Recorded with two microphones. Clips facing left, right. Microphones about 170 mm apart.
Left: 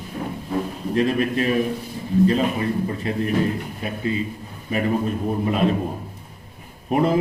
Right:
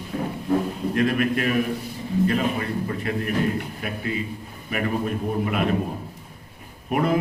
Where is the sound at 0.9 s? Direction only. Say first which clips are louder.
Left 2 dB; 30° left (ahead or behind).